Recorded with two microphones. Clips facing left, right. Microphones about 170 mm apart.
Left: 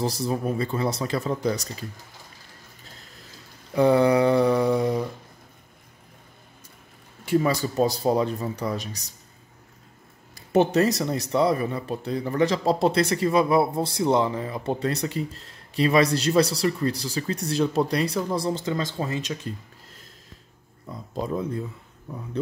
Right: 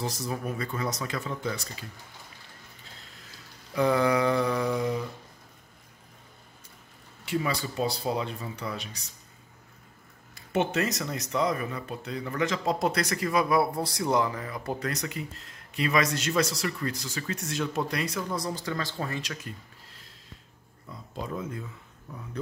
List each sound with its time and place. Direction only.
0.0 s speech: 35° left (ahead or behind)
3.7 s speech: 30° left (ahead or behind)
7.2 s speech: 40° left (ahead or behind)
10.3 s speech: 35° left (ahead or behind)
21.1 s speech: 35° left (ahead or behind)